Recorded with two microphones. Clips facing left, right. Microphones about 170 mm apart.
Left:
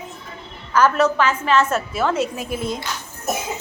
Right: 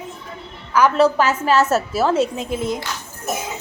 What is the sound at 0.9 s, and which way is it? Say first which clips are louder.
A woman's voice: right 2 dB; 35° right (ahead or behind).